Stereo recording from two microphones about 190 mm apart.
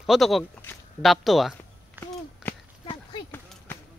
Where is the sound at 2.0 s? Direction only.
10° right (ahead or behind).